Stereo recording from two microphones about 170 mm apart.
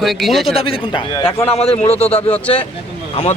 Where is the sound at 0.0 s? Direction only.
Centre (ahead or behind).